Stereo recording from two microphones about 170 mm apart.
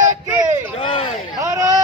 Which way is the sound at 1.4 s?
20° right (ahead or behind).